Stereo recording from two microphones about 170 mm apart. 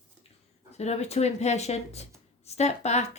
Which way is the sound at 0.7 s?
40° left (ahead or behind).